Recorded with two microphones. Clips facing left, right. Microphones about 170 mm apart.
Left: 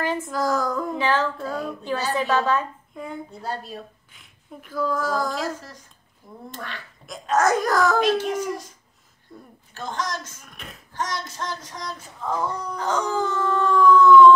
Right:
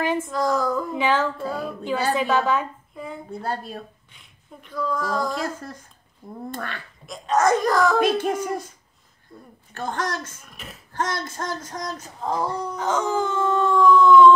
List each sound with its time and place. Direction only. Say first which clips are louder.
0.3 s a child's voice: right 1 dB; centre (ahead or behind)
0.9 s a woman's voice: even; 15° right (ahead or behind)
4.1 s speech: left 3 dB; centre (ahead or behind)
6.5 s a woman's voice: right 3 dB; 55° right (ahead or behind)
7.1 s a child's voice: right 1 dB; centre (ahead or behind)
8.0 s a child's voice: right 1 dB; 55° right (ahead or behind)
9.8 s a woman's voice: right 2 dB; 55° right (ahead or behind)
10.4 s a child's voice: even; centre (ahead or behind)
10.9 s female singing: right 3 dB; 55° right (ahead or behind); by 13.7 s 25° right (ahead or behind)
13.8 s a woman's voice: left 1 dB; 15° right (ahead or behind)